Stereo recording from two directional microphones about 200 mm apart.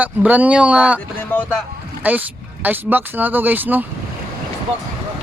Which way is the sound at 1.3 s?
10° left (ahead or behind).